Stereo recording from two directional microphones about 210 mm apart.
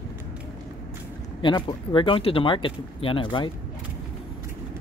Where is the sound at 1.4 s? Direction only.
25° left (ahead or behind).